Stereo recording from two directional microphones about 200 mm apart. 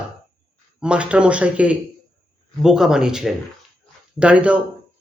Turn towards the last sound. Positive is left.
turn(degrees=-5)  # may be behind; listen again after turning